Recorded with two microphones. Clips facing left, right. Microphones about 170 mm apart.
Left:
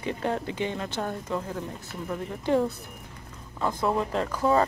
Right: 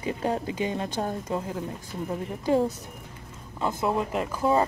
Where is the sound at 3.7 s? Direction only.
5° right (ahead or behind).